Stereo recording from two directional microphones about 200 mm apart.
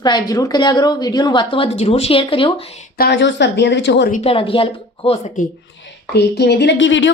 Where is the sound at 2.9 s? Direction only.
55° left (ahead or behind).